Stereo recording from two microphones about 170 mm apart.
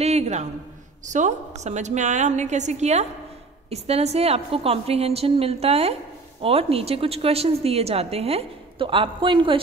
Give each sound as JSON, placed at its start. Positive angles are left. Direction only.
{"t": 0.0, "sound": "a man's voice", "side_deg": -40}